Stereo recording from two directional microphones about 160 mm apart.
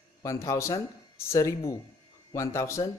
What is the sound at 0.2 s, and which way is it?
Speech, 20° left (ahead or behind).